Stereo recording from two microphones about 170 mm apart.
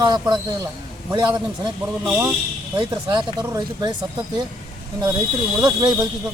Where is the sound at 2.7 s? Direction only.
30° right (ahead or behind).